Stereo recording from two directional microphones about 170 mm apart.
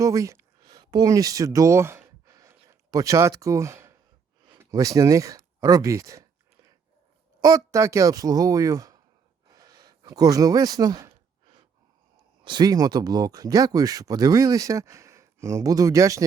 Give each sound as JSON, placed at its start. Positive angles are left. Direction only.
{"t": 0.0, "sound": "a sound", "side_deg": -20}
{"t": 4.5, "sound": "speech", "side_deg": -20}
{"t": 7.4, "sound": "speech", "side_deg": -20}
{"t": 12.5, "sound": "speech", "side_deg": -25}